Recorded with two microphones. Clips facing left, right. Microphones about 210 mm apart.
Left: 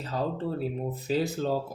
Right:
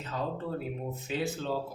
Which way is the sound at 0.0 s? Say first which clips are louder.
Left 4 dB; 35° left (ahead or behind).